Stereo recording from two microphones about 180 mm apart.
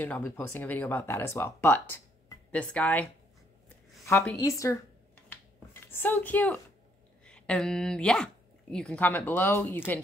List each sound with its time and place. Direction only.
0.0 s speech: 10° left (ahead or behind)
3.6 s a sound: 10° left (ahead or behind)
5.3 s finger snapping: 10° left (ahead or behind)
7.2 s speech: 5° left (ahead or behind)